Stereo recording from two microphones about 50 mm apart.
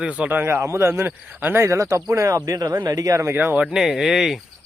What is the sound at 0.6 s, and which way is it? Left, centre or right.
Speech, right.